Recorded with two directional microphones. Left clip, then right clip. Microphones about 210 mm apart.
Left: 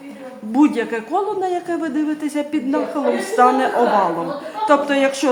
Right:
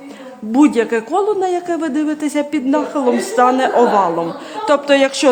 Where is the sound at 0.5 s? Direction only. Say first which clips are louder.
Right 4 dB; 35° right (ahead or behind).